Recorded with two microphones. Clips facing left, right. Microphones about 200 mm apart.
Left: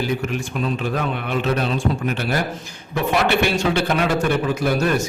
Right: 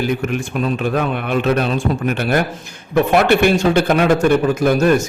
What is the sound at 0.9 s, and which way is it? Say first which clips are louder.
Speech: right 5 dB; 55° right (ahead or behind).